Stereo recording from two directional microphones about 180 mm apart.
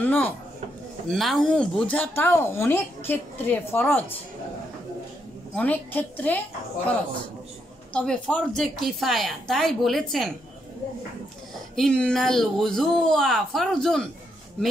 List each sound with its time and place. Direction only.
0.0 s speech: 10° left (ahead or behind)
5.6 s speech: 10° left (ahead or behind)
7.9 s a woman's voice: 5° left (ahead or behind)
11.7 s a woman's voice: 5° left (ahead or behind)